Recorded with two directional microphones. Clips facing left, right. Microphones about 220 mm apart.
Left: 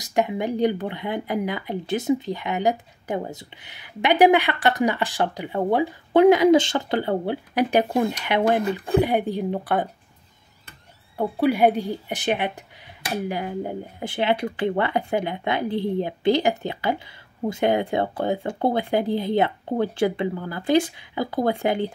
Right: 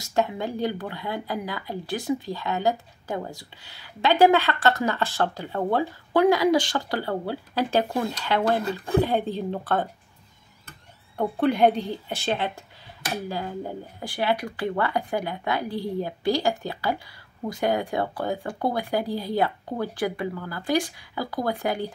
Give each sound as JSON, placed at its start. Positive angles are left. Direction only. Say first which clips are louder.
{"t": 0.0, "sound": "speech", "louder": "left 2 dB", "side_deg": 15}
{"t": 11.1, "sound": "speech", "louder": "left 1 dB", "side_deg": 10}